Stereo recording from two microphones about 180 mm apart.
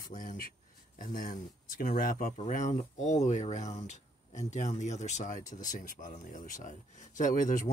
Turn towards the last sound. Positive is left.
turn(degrees=45)  # may be behind; listen again after turning